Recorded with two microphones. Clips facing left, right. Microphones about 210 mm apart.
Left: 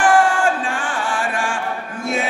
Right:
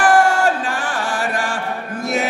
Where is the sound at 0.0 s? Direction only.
40° right (ahead or behind).